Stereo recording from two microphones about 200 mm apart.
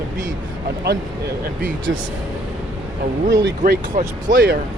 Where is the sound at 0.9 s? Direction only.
55° right (ahead or behind).